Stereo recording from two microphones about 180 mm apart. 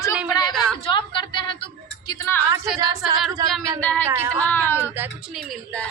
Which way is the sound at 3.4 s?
20° right (ahead or behind).